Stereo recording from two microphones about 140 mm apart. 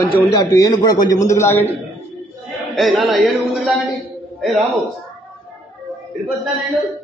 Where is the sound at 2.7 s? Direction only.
Centre (ahead or behind).